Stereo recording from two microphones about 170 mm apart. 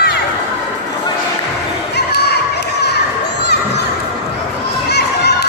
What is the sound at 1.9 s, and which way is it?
Crowd, 75° left (ahead or behind).